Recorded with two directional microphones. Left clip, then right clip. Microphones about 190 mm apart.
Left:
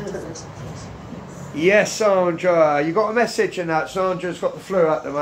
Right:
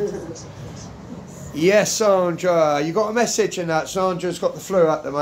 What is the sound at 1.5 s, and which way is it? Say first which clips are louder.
Speech: even; 20° right (ahead or behind).